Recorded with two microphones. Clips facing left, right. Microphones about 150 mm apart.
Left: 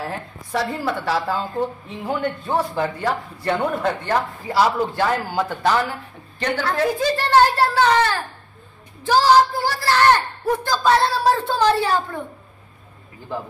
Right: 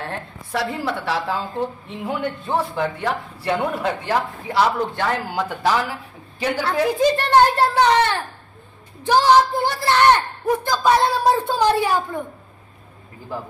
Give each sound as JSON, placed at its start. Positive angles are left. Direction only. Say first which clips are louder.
{"t": 0.0, "sound": "speech", "louder": "left 1 dB", "side_deg": 5}
{"t": 6.6, "sound": "a child's voice", "louder": "right 3 dB", "side_deg": -15}